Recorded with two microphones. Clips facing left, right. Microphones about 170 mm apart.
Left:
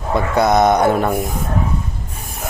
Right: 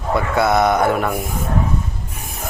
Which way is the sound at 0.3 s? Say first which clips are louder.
Left 3 dB; 20° left (ahead or behind).